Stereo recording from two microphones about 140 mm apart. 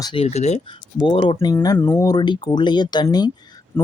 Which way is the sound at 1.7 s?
15° left (ahead or behind).